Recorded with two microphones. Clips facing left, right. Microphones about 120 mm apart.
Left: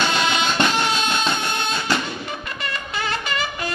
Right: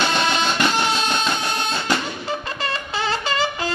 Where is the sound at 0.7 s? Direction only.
Centre (ahead or behind).